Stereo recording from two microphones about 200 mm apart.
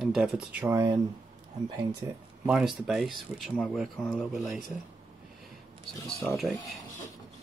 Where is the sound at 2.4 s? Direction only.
5° right (ahead or behind).